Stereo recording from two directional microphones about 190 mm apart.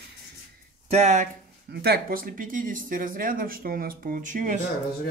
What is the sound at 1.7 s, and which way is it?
Speech, 55° right (ahead or behind).